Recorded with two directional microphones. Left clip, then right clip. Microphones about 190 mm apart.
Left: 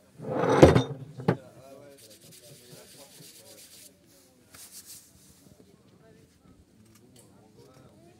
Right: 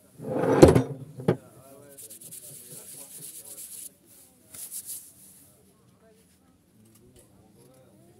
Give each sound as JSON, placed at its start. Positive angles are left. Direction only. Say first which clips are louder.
{"t": 0.2, "sound": "drawer open or close", "louder": "right 1 dB", "side_deg": -35}
{"t": 0.6, "sound": "a sound", "louder": "right 2 dB", "side_deg": -35}
{"t": 2.2, "sound": "rub", "louder": "right 2 dB", "side_deg": -40}